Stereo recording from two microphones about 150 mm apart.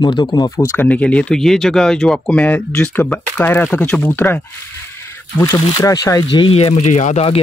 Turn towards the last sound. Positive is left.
turn(degrees=45)  # may be behind; listen again after turning